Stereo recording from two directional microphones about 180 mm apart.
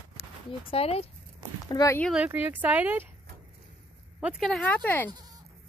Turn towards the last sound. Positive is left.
turn(degrees=-20)  # may be behind; listen again after turning